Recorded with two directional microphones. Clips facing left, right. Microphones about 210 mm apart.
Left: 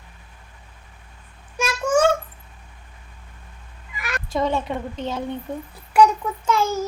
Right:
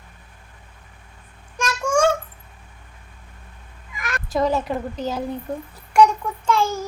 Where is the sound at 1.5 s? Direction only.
5° left (ahead or behind).